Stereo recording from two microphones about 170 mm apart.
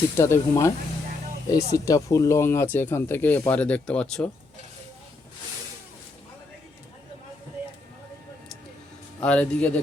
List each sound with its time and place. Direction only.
0.2 s speech: 15° left (ahead or behind)
9.2 s speech: 5° left (ahead or behind)